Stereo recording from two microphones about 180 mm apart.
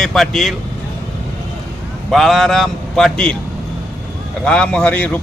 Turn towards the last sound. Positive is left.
turn(degrees=5)  # may be behind; listen again after turning